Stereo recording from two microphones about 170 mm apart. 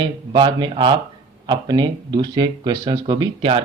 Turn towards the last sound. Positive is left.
turn(degrees=-30)  # may be behind; listen again after turning